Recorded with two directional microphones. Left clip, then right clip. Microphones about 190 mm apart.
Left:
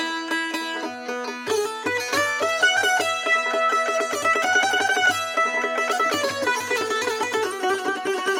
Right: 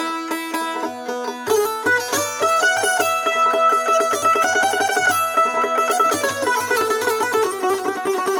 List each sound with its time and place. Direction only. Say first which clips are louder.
2.1 s music: right 3 dB; 45° right (ahead or behind)